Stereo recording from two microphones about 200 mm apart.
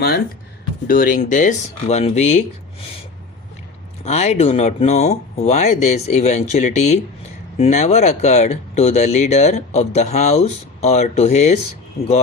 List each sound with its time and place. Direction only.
0.9 s speech: 45° left (ahead or behind)
4.0 s speech: 35° left (ahead or behind)